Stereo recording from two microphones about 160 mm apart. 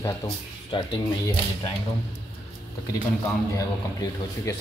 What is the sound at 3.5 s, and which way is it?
Speech, 20° left (ahead or behind).